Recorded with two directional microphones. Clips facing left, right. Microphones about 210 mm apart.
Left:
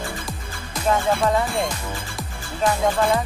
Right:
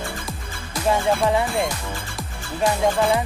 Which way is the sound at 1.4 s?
Centre (ahead or behind).